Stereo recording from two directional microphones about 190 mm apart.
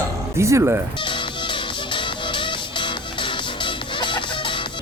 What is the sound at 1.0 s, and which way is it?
Music, 25° left (ahead or behind).